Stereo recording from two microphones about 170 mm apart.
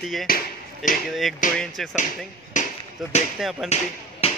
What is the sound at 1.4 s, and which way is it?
Speech, 50° left (ahead or behind).